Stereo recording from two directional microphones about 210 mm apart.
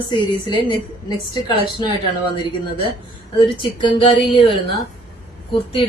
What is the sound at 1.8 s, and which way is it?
Speech, 20° left (ahead or behind).